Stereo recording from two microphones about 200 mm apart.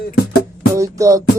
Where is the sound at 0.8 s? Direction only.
15° right (ahead or behind).